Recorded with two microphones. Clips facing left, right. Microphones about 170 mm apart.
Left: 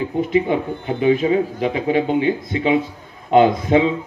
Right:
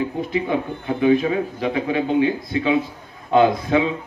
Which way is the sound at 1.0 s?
20° left (ahead or behind).